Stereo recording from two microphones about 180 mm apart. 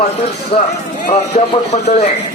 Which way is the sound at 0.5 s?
30° left (ahead or behind).